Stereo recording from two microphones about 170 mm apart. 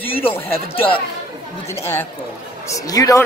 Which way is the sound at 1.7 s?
15° left (ahead or behind).